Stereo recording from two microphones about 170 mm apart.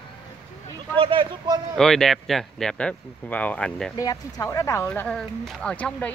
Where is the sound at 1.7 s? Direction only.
5° left (ahead or behind).